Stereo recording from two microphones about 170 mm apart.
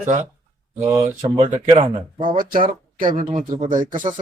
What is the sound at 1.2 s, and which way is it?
Speech, 30° right (ahead or behind).